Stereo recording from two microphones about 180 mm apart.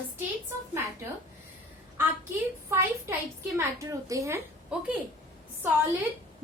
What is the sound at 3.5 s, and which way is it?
Speech, 15° right (ahead or behind).